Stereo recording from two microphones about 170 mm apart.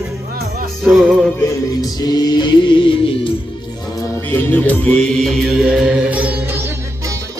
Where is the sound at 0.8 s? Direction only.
5° right (ahead or behind).